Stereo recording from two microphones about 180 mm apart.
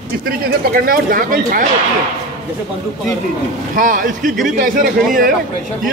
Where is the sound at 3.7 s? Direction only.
45° right (ahead or behind).